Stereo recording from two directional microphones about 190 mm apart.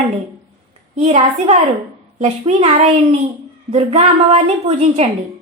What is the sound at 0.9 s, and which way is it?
A woman's voice, 35° right (ahead or behind).